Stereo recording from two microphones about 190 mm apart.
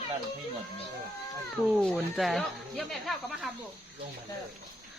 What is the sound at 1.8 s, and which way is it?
Speech, centre (ahead or behind).